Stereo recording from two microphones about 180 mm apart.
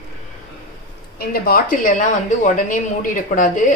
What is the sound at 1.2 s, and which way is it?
A woman's voice, 55° left (ahead or behind).